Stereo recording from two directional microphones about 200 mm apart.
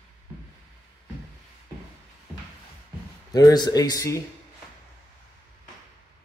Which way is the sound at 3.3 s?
20° left (ahead or behind).